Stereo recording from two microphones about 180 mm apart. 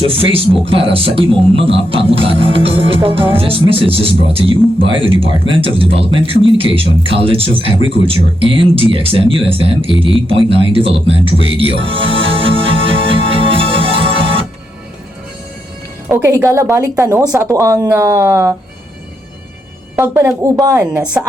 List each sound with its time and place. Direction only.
0.1 s speech: 30° right (ahead or behind)
11.3 s music: 30° right (ahead or behind)
16.0 s speech: 15° right (ahead or behind)
20.4 s speech: 15° right (ahead or behind)